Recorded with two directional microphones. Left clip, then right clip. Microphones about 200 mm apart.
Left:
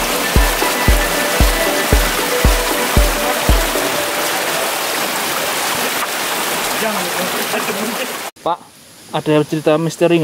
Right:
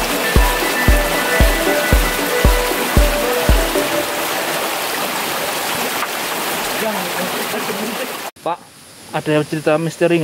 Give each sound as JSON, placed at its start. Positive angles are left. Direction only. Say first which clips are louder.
{"t": 9.3, "sound": "speech", "louder": "left 2 dB", "side_deg": 35}